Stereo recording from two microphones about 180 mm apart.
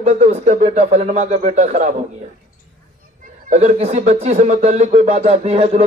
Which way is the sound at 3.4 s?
40° right (ahead or behind).